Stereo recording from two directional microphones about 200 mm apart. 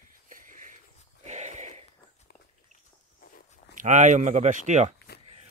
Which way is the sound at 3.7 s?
40° right (ahead or behind).